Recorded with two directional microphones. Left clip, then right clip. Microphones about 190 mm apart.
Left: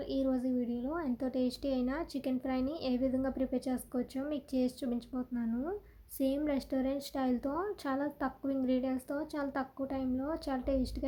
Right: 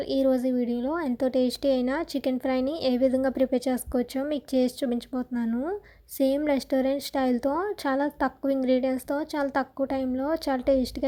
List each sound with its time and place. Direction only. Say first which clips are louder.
0.1 s a woman's voice: right 10 dB; 35° right (ahead or behind)